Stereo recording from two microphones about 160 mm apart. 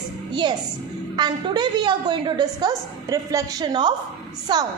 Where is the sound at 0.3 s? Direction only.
30° right (ahead or behind).